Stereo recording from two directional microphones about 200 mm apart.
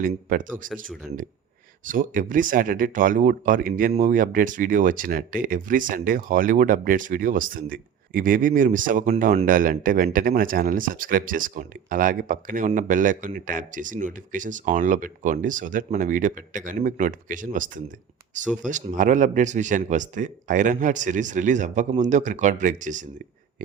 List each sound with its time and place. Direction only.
0.0 s speech: 45° right (ahead or behind)
1.8 s speech: 40° right (ahead or behind)